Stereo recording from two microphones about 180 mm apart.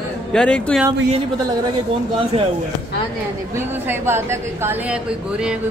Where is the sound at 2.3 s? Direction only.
35° right (ahead or behind).